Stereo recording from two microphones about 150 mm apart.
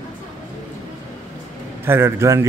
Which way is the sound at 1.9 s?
15° right (ahead or behind).